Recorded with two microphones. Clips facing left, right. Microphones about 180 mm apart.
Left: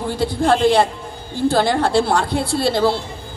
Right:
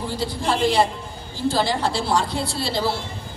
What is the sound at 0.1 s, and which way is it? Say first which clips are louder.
A woman's voice: left 8 dB; 55° left (ahead or behind).